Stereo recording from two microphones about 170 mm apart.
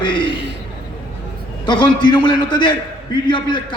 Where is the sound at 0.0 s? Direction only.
30° left (ahead or behind).